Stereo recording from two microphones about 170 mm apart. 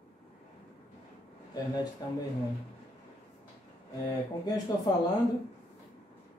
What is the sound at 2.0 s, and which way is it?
Speech, 25° left (ahead or behind).